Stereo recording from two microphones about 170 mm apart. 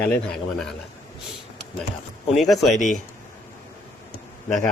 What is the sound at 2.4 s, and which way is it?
Speech, centre (ahead or behind).